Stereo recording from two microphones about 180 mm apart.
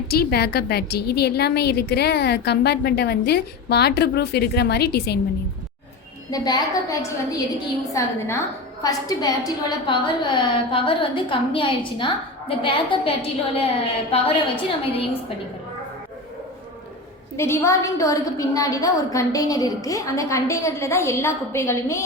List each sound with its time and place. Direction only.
0.1 s a woman's voice: 60° left (ahead or behind)
6.3 s a woman's voice: 20° left (ahead or behind)
8.8 s a woman's voice: 20° left (ahead or behind)
17.3 s a woman's voice: 15° left (ahead or behind)